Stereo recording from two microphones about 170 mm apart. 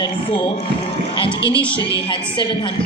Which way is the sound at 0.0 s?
30° left (ahead or behind).